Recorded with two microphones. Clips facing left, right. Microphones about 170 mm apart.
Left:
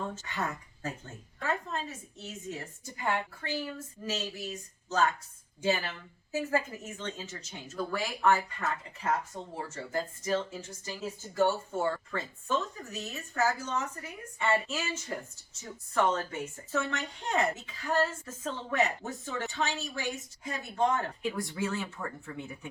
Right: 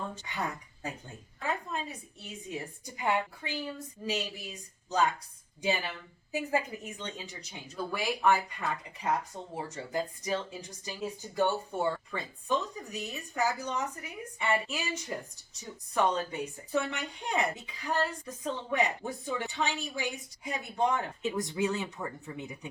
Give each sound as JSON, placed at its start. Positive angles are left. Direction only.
{"t": 0.3, "sound": "speech", "side_deg": -15}